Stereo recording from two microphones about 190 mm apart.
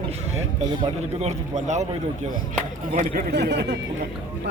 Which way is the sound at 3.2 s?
60° right (ahead or behind).